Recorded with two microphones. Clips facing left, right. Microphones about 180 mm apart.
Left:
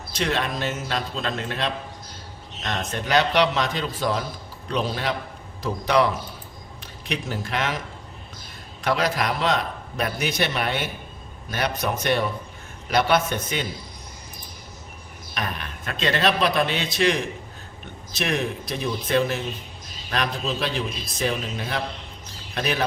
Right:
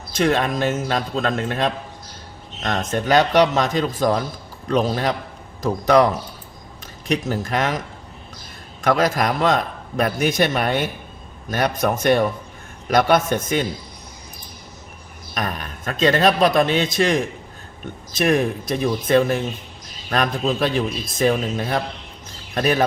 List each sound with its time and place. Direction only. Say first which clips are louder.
0.1 s a man's voice: right 6 dB; 50° right (ahead or behind)
8.8 s a man's voice: right 5 dB; 45° right (ahead or behind)
15.4 s a man's voice: right 4 dB; 45° right (ahead or behind)